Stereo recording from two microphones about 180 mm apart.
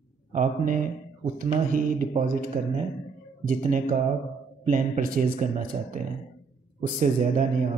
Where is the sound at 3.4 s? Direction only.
45° right (ahead or behind).